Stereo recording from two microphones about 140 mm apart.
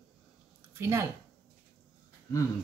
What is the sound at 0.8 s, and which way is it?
Speech, 20° right (ahead or behind).